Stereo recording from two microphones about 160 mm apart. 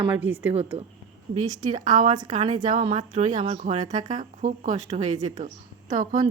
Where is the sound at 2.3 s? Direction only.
40° right (ahead or behind).